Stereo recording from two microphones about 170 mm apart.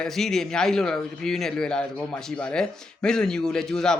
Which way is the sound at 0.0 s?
Centre (ahead or behind).